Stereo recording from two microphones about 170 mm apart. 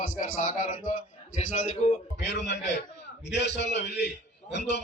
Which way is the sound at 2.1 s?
90° left.